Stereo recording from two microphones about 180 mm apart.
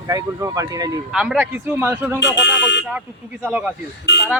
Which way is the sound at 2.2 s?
80° left.